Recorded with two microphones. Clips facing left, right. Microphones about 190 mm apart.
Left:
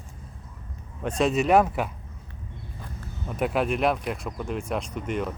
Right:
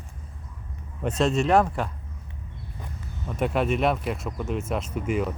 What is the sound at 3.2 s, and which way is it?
Speech, centre (ahead or behind).